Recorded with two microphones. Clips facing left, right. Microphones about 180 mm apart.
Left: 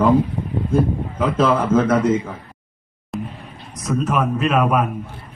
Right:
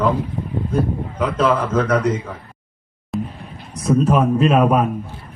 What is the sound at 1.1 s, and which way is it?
Speech, 45° left (ahead or behind).